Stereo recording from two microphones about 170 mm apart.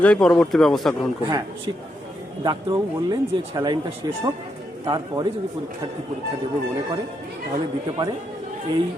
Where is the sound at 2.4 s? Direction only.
25° right (ahead or behind).